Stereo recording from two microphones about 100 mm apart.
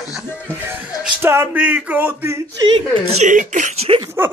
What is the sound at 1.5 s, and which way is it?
Speech, 15° right (ahead or behind).